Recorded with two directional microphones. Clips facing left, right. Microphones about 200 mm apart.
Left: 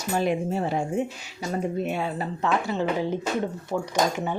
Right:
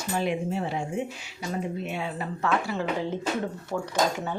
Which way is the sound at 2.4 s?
20° left (ahead or behind).